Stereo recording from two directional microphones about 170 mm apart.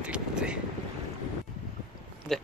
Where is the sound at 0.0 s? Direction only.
5° right (ahead or behind).